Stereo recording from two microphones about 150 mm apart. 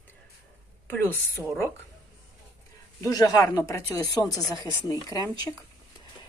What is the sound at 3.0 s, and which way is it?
Speech, 25° left (ahead or behind).